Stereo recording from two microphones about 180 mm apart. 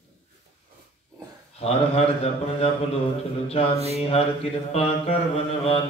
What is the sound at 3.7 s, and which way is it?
Mantra, 35° right (ahead or behind).